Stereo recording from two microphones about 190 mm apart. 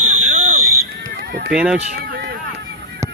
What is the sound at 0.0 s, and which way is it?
Fire alarm, 45° right (ahead or behind).